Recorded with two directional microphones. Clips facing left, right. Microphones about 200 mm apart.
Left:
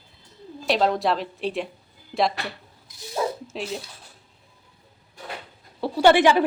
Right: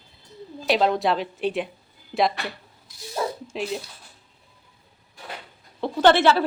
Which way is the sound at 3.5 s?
Centre (ahead or behind).